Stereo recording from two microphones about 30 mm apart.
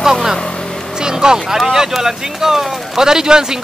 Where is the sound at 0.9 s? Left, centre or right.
Right.